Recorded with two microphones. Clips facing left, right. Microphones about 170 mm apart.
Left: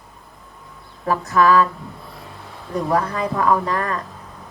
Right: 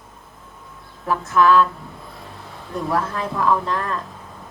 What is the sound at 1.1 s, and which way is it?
Speech, centre (ahead or behind).